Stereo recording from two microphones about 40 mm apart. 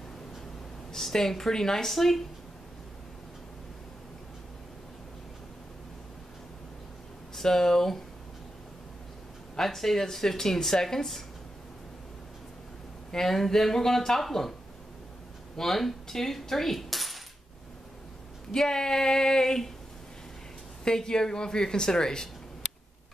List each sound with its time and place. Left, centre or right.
0.9 s speech: centre
1.9 s speech: centre
7.3 s speech: centre
9.6 s speech: centre
13.1 s speech: centre
15.5 s speech: centre
18.5 s speech: centre
20.8 s speech: centre